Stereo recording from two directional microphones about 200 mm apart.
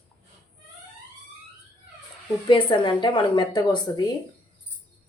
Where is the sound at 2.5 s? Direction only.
25° left (ahead or behind).